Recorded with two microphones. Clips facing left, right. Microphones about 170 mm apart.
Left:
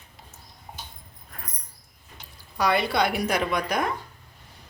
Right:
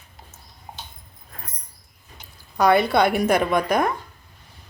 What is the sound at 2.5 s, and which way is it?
A woman's voice, 50° right (ahead or behind).